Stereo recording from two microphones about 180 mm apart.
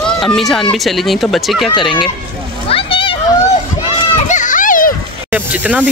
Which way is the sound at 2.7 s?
30° left (ahead or behind).